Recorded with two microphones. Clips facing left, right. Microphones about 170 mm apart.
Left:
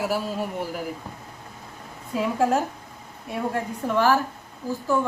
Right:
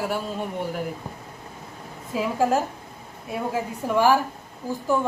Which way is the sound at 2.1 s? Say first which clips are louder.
Even; centre (ahead or behind).